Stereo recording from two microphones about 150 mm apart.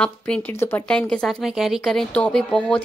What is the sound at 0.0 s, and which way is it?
Speech, 10° left (ahead or behind).